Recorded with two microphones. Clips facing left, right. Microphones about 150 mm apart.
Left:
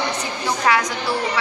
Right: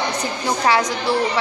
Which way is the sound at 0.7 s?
30° right (ahead or behind).